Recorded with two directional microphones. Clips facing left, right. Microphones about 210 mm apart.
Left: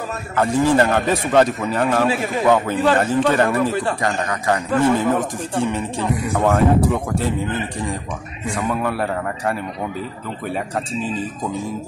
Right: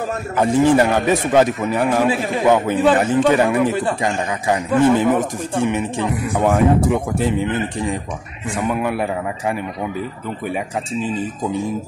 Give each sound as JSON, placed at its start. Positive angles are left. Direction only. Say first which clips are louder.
{"t": 0.4, "sound": "a man's voice", "louder": "right 2 dB", "side_deg": -15}
{"t": 8.6, "sound": "a man's voice", "louder": "right 2 dB", "side_deg": -15}